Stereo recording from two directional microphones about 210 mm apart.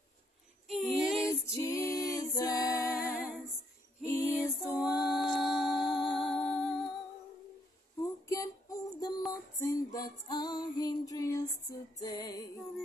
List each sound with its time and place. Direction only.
0.7 s female singing: centre (ahead or behind)
1.2 s a capella: 15° left (ahead or behind)
4.0 s music: 15° left (ahead or behind)
4.6 s a capella: centre (ahead or behind)
5.7 s music: 20° left (ahead or behind)
6.3 s music: 5° left (ahead or behind)
8.0 s music: 15° left (ahead or behind)